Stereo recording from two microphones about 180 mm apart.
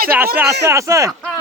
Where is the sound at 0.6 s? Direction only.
15° right (ahead or behind).